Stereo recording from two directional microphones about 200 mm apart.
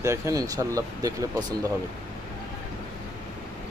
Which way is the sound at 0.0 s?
15° right (ahead or behind).